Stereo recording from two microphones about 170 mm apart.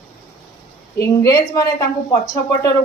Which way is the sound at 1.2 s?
20° left (ahead or behind).